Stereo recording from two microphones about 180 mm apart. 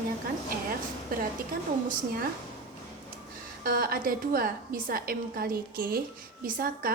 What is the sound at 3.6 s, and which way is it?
A woman's voice, 55° right (ahead or behind).